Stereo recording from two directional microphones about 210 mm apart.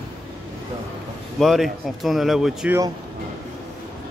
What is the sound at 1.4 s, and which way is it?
Speech, centre (ahead or behind).